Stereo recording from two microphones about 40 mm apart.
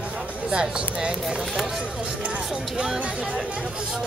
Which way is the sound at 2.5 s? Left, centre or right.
Centre.